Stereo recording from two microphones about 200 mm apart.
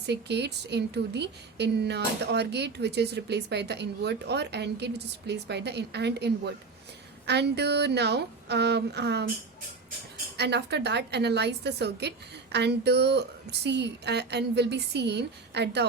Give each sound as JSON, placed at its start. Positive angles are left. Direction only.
{"t": 0.0, "sound": "a woman's voice", "side_deg": -55}
{"t": 10.3, "sound": "a woman's voice", "side_deg": -55}